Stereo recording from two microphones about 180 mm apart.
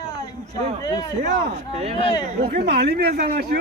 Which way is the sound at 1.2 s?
40° right (ahead or behind).